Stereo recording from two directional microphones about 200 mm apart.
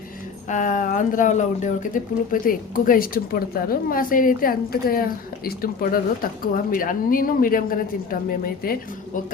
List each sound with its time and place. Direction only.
0.4 s a woman's voice: 40° left (ahead or behind)